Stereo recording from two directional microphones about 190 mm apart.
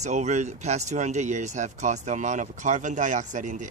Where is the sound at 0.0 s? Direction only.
40° right (ahead or behind).